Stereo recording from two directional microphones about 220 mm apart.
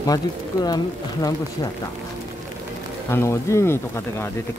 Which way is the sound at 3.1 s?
10° left (ahead or behind).